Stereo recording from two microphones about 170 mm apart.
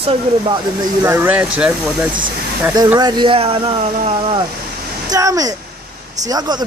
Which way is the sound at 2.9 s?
25° right (ahead or behind).